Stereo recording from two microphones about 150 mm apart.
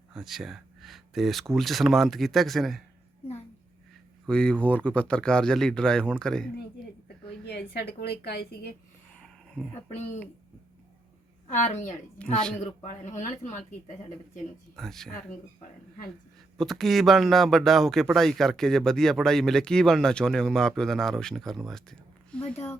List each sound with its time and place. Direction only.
0.1 s speech: centre (ahead or behind)
4.3 s speech: 5° left (ahead or behind)
7.4 s a woman's voice: 90° left
11.4 s speech: 50° left (ahead or behind)
12.2 s a woman's voice: 5° left (ahead or behind)
12.8 s speech: 50° left (ahead or behind)
14.8 s speech: centre (ahead or behind)
16.6 s speech: centre (ahead or behind)